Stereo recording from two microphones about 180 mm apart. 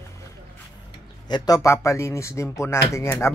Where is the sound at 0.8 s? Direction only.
25° left (ahead or behind).